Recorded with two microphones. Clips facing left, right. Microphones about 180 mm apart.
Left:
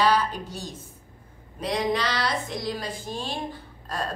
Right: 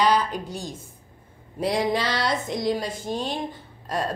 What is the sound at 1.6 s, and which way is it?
A woman's voice, 30° right (ahead or behind).